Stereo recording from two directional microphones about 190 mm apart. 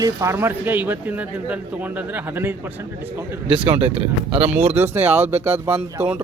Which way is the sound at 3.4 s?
30° right (ahead or behind).